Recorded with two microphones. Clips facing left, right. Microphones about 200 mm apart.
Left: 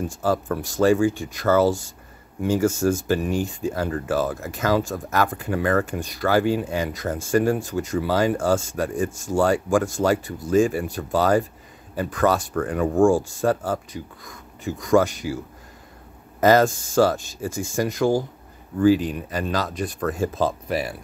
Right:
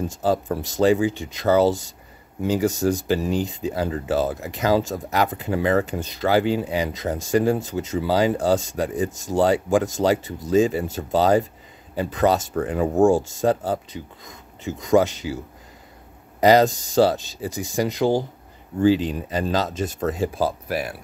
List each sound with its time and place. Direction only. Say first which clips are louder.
0.1 s speech: right 1 dB; 20° right (ahead or behind); by 20.9 s centre (ahead or behind)